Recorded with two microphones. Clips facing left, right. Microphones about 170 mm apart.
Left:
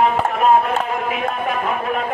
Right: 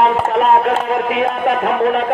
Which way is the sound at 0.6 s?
70° right (ahead or behind).